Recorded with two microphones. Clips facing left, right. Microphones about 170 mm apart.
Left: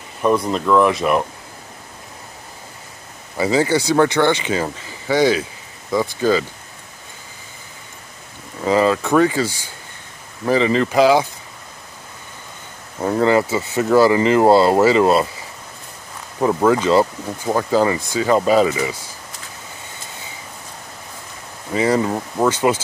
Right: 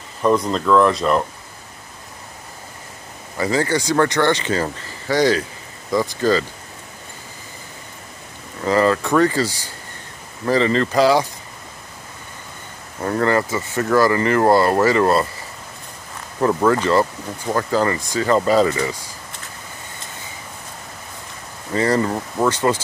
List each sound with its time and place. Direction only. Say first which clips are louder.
0.5 s speech: even; 10° left (ahead or behind)
3.3 s speech: left 3 dB; 10° left (ahead or behind)
8.6 s speech: left 1 dB; 10° left (ahead or behind)
10.4 s speech: left 1 dB; 10° left (ahead or behind)
13.0 s speech: left 3 dB; 10° left (ahead or behind)
16.3 s speech: left 1 dB; 10° left (ahead or behind)
21.7 s speech: left 1 dB; 5° left (ahead or behind)